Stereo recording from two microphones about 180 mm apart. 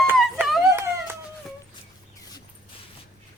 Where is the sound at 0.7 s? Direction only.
15° right (ahead or behind).